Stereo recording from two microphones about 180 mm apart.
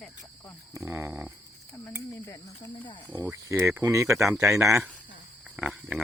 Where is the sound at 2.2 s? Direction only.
20° left (ahead or behind).